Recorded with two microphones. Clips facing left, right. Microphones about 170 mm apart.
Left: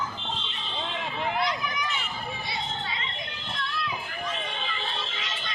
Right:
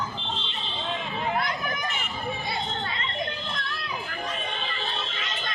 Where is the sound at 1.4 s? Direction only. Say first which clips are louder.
Left 1 dB; 50° right (ahead or behind).